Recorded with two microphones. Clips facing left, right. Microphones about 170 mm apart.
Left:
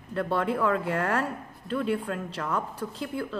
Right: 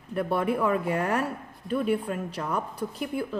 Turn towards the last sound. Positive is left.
turn(degrees=-15)  # may be behind; listen again after turning